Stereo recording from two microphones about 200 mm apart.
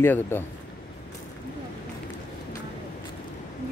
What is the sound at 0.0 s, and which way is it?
Speech, 10° left (ahead or behind).